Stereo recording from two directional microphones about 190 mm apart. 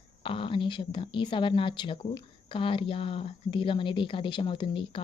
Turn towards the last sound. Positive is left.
turn(degrees=25)  # may be behind; listen again after turning